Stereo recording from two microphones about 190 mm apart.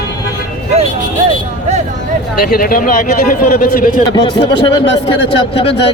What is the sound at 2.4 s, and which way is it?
A man's voice, 50° left (ahead or behind).